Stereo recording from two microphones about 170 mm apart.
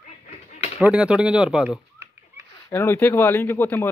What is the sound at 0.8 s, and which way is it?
Speech, 5° right (ahead or behind).